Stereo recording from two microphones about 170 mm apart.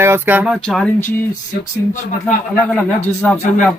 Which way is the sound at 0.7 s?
5° left (ahead or behind).